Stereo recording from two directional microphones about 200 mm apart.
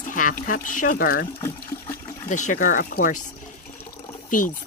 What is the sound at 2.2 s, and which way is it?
Speech, 40° left (ahead or behind).